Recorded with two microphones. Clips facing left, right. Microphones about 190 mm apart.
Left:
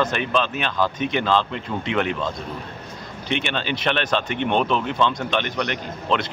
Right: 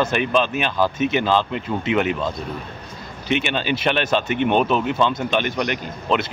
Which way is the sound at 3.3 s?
5° right (ahead or behind).